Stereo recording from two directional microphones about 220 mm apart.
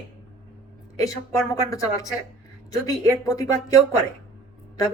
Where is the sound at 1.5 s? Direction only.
15° left (ahead or behind).